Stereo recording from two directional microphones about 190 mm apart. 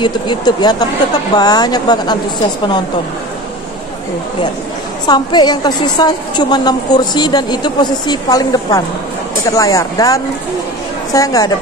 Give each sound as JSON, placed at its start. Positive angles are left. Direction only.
{"t": 0.0, "sound": "a woman's voice", "side_deg": 20}
{"t": 5.0, "sound": "a woman's voice", "side_deg": 20}